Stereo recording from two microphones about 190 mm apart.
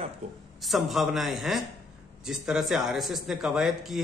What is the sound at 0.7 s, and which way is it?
Speech, centre (ahead or behind).